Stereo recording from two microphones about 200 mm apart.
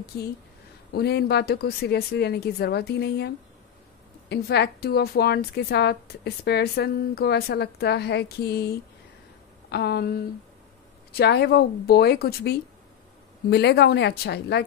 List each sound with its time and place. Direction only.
0.9 s a woman's voice: 50° left (ahead or behind)